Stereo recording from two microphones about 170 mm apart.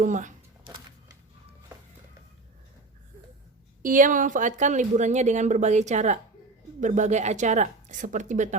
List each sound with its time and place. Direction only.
0.0 s speech: 50° right (ahead or behind)
3.8 s speech: 50° right (ahead or behind)